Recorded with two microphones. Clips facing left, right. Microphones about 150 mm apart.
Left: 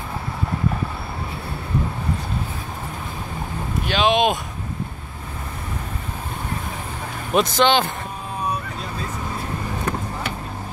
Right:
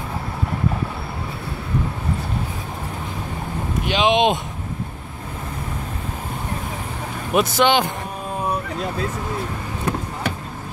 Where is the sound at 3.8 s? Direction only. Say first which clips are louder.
Right 1 dB; 20° right (ahead or behind).